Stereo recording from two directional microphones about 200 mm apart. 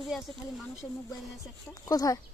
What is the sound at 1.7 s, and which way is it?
Speech, 20° left (ahead or behind).